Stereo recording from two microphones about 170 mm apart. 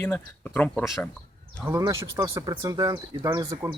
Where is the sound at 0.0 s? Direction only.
10° left (ahead or behind).